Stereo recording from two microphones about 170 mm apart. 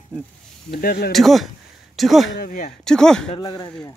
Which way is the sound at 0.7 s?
65° left (ahead or behind).